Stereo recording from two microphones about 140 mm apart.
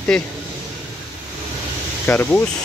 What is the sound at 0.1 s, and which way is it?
Speech, 5° left (ahead or behind).